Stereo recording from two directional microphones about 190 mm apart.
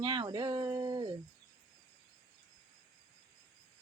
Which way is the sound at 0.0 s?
25° right (ahead or behind).